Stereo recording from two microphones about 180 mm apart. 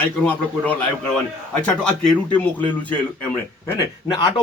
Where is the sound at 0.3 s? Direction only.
10° left (ahead or behind).